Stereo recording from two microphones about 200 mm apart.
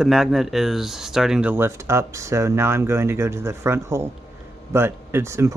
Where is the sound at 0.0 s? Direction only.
Centre (ahead or behind).